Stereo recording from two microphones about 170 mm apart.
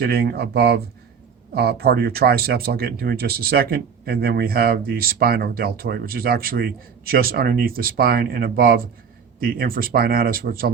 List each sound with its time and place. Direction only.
0.0 s speech: 70° right (ahead or behind)